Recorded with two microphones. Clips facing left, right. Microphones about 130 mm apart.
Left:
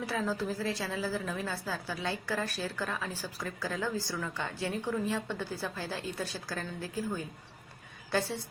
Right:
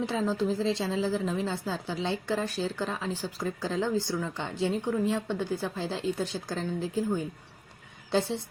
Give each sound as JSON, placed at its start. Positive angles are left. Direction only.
{"t": 0.0, "sound": "a woman's voice", "side_deg": -20}